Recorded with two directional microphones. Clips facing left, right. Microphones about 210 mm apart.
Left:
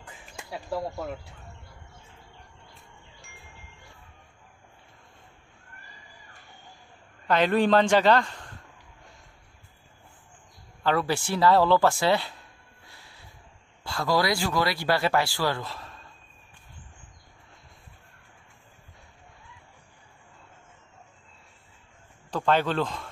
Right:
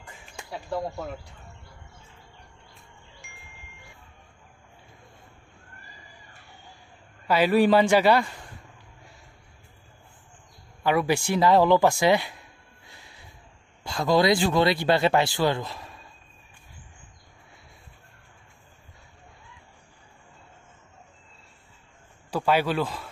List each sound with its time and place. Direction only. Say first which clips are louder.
0.0 s speech: even; centre (ahead or behind)
7.2 s a man's voice: right 2 dB; 5° right (ahead or behind)
10.8 s a woman's voice: right 2 dB; 15° right (ahead or behind)
12.8 s snort: right 1 dB; 20° right (ahead or behind)
13.8 s speech: right 4 dB; 20° right (ahead or behind)
22.3 s a man's voice: right 1 dB; 10° right (ahead or behind)